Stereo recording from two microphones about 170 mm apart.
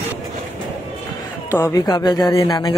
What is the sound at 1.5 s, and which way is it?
A man's voice, 20° left (ahead or behind).